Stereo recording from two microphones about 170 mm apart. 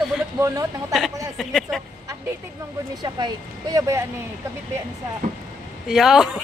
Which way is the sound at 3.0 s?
20° right (ahead or behind).